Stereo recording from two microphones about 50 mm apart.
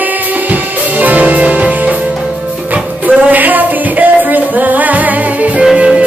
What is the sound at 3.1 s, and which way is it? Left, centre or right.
Music, right.